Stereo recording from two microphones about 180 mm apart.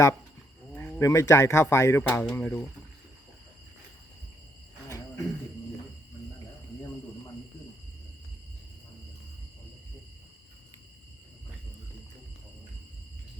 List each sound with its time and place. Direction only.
0.7 s speech: 15° left (ahead or behind)
4.9 s cricket: 20° left (ahead or behind)